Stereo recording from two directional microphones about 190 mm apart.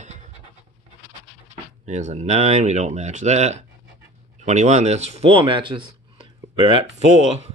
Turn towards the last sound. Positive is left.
turn(degrees=35)  # may be behind; listen again after turning